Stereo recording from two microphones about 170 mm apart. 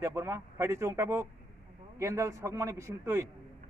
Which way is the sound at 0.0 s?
15° right (ahead or behind).